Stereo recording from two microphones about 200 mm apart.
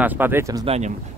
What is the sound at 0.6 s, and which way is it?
Speech, 30° right (ahead or behind).